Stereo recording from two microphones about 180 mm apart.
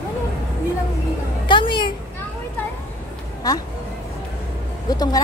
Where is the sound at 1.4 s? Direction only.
25° left (ahead or behind).